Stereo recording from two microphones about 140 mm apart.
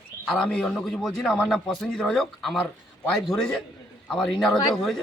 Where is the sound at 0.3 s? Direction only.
5° left (ahead or behind).